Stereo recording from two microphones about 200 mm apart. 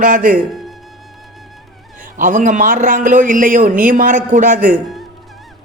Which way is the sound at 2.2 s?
40° right (ahead or behind).